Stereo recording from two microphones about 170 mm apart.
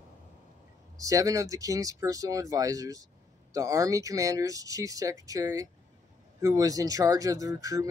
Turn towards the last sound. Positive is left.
turn(degrees=-20)  # may be behind; listen again after turning